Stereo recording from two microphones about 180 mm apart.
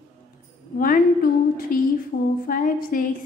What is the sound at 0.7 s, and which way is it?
A woman's voice, 50° left (ahead or behind).